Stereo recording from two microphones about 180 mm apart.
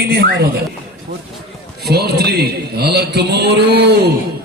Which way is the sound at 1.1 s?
55° right (ahead or behind).